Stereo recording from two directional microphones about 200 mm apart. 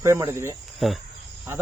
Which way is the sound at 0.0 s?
15° right (ahead or behind).